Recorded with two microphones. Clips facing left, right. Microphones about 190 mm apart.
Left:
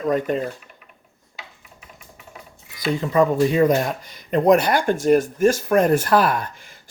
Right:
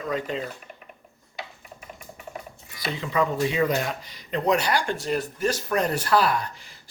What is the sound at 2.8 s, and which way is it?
Speech, 45° left (ahead or behind).